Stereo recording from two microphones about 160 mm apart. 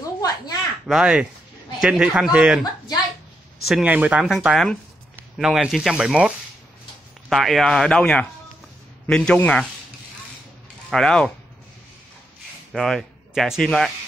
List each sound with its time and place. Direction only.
0.2 s a sound: 25° left (ahead or behind)
0.8 s speech: 5° right (ahead or behind)
3.6 s speech: 5° right (ahead or behind)
10.9 s speech: 5° left (ahead or behind)
12.7 s speech: centre (ahead or behind)